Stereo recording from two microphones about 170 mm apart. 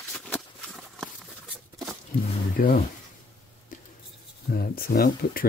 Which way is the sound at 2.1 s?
60° left (ahead or behind).